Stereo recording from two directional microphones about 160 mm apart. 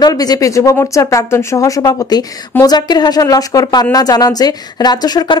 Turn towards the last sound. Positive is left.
turn(degrees=25)  # may be behind; listen again after turning